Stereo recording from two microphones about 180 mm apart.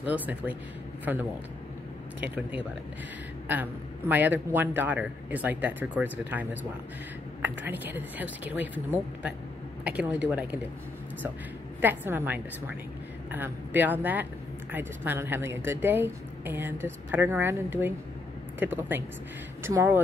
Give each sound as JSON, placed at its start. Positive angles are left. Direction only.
{"t": 0.0, "sound": "a woman's voice", "side_deg": -10}
{"t": 4.1, "sound": "a woman's voice", "side_deg": -10}
{"t": 11.8, "sound": "a woman's voice", "side_deg": -10}